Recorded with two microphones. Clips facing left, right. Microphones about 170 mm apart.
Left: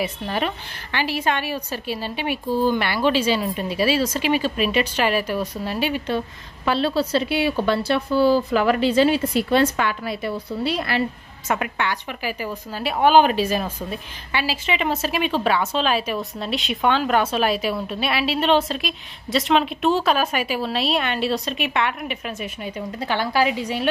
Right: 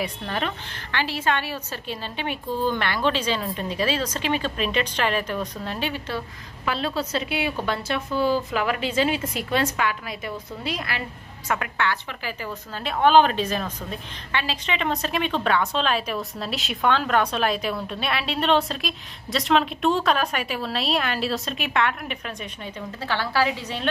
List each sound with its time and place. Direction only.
0.0 s a woman's voice: 5° left (ahead or behind)
6.6 s a woman's voice: 30° left (ahead or behind)
11.4 s a woman's voice: 20° left (ahead or behind)